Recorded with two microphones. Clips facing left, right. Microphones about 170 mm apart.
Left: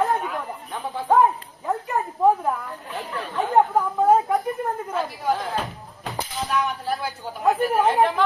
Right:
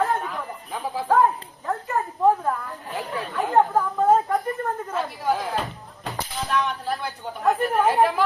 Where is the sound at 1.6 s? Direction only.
15° left (ahead or behind).